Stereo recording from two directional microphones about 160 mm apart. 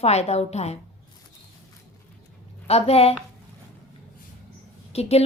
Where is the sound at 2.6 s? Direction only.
40° left (ahead or behind).